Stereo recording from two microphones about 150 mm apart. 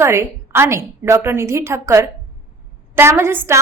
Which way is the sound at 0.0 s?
20° right (ahead or behind).